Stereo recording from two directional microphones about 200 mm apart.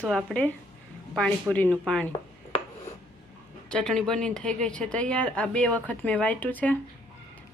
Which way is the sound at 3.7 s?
5° left (ahead or behind).